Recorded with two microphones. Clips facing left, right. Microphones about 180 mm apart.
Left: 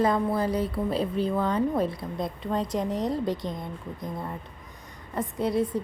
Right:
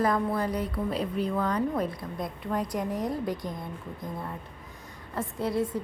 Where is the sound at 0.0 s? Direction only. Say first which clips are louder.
Left 2 dB; 25° left (ahead or behind).